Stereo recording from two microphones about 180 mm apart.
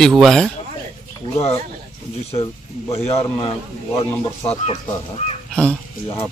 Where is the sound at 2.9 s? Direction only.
35° left (ahead or behind).